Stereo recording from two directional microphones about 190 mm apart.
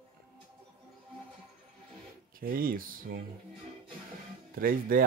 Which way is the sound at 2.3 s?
50° right (ahead or behind).